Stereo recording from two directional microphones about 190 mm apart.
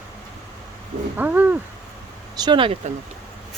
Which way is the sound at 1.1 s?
10° right (ahead or behind).